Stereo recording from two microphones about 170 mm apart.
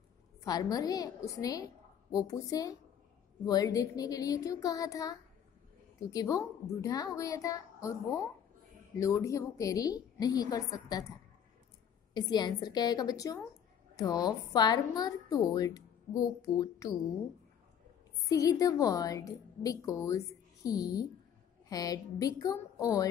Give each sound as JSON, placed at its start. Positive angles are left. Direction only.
{"t": 0.4, "sound": "a woman's voice", "side_deg": 20}
{"t": 18.3, "sound": "a woman's voice", "side_deg": 20}